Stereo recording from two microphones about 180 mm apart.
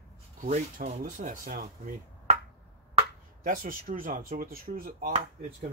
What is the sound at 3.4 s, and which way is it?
Speech, 50° right (ahead or behind).